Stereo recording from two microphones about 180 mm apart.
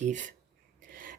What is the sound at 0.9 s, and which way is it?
Filing, 50° right (ahead or behind).